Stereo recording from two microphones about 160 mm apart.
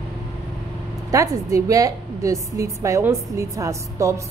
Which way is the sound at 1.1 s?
20° right (ahead or behind).